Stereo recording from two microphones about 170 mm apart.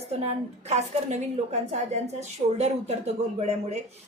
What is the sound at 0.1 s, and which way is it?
A woman's voice, 40° right (ahead or behind).